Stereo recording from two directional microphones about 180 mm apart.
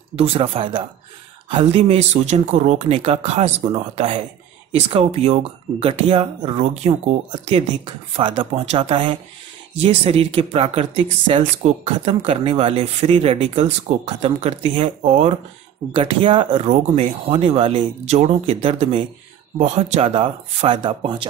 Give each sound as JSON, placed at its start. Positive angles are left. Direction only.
{"t": 0.1, "sound": "speech", "side_deg": -35}